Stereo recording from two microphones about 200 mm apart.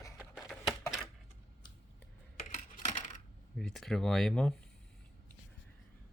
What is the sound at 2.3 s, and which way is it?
Coin, 40° left (ahead or behind).